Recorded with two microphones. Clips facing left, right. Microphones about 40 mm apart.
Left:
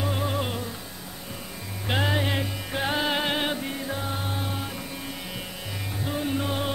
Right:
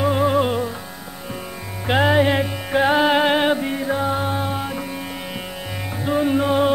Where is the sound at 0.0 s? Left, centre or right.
Right.